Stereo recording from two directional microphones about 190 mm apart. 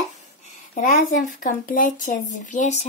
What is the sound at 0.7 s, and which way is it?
Speech, 40° left (ahead or behind).